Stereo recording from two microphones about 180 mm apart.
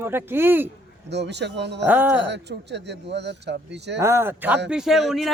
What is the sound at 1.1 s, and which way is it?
Speech, 75° right (ahead or behind).